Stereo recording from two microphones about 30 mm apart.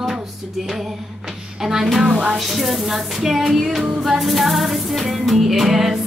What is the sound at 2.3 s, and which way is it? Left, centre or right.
Music, centre.